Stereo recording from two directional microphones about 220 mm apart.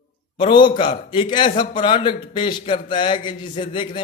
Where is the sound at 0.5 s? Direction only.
20° left (ahead or behind).